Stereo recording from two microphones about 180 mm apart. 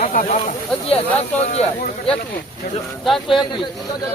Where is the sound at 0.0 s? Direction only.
45° left (ahead or behind).